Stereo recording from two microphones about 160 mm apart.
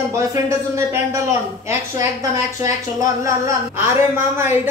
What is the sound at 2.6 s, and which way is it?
A woman's voice, 20° right (ahead or behind).